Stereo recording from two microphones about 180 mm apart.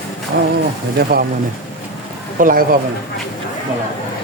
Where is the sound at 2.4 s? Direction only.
50° right (ahead or behind).